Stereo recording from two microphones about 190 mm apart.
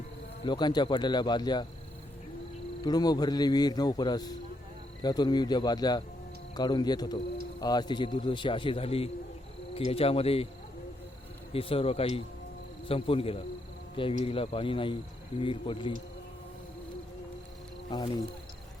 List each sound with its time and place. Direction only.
0.4 s speech: 25° left (ahead or behind)
2.8 s speech: 20° left (ahead or behind)
11.5 s speech: 30° left (ahead or behind)
17.9 s speech: 30° left (ahead or behind)